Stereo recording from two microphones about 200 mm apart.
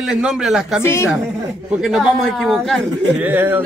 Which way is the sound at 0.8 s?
15° left (ahead or behind).